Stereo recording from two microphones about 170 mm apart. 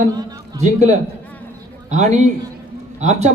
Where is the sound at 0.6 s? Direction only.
45° right (ahead or behind).